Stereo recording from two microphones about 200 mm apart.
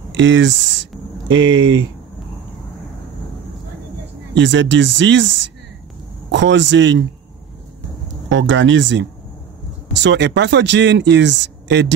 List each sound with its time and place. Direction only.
0.1 s speech: 65° right (ahead or behind)
4.4 s speech: 65° right (ahead or behind)
8.3 s speech: 70° right (ahead or behind)